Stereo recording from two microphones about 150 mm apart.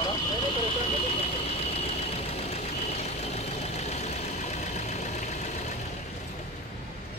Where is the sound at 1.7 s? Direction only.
45° left (ahead or behind).